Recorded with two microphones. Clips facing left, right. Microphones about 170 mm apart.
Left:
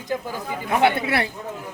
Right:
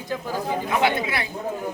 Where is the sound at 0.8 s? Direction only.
65° left (ahead or behind).